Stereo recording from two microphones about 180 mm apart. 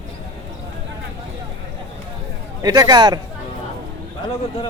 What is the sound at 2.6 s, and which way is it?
Speech, 20° right (ahead or behind).